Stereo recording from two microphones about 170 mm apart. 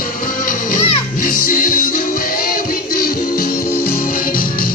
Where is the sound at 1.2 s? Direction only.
55° left (ahead or behind).